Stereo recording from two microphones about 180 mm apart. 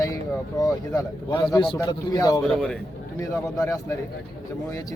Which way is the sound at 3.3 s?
20° left (ahead or behind).